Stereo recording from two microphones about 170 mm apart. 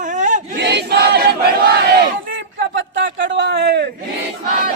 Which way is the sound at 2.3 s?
90° right.